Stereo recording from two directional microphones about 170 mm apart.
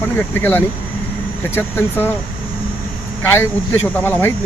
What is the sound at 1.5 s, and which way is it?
Speech, 10° left (ahead or behind).